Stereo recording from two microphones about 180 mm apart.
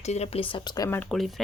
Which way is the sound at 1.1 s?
Centre (ahead or behind).